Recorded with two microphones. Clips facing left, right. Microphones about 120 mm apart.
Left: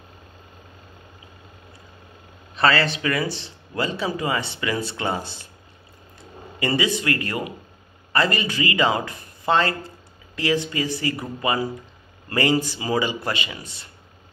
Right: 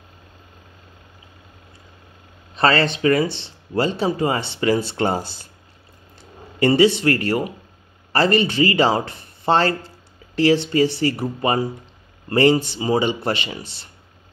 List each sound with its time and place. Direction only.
2.5 s speech: 25° right (ahead or behind)
6.6 s speech: 30° right (ahead or behind)